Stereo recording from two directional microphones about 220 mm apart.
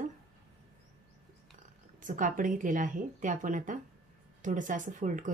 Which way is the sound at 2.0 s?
35° right (ahead or behind).